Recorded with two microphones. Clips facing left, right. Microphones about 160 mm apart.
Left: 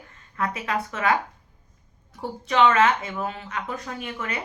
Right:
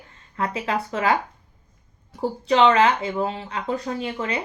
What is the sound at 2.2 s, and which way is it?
Speech, 30° right (ahead or behind).